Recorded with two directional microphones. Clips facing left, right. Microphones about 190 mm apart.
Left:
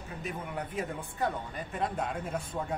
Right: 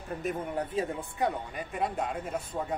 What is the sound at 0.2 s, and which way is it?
Speech, 45° right (ahead or behind).